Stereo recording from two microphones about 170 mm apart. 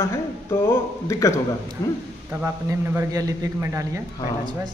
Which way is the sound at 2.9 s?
15° right (ahead or behind).